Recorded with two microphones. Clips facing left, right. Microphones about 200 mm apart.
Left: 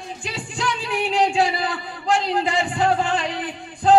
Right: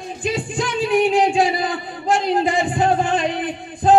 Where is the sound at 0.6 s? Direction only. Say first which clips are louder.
Right 7 dB; 20° right (ahead or behind).